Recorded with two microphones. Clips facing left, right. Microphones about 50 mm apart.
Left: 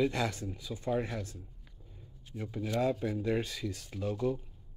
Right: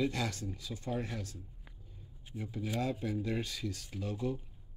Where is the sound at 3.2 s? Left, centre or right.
Left.